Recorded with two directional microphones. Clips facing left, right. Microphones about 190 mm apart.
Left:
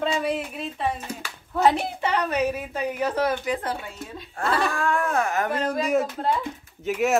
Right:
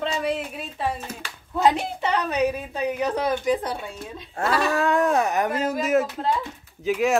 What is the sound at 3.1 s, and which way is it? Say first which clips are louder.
Speech: right 2 dB; 15° right (ahead or behind).